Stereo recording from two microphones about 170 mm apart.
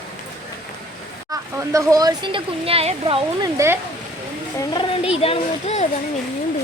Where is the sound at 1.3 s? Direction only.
20° right (ahead or behind).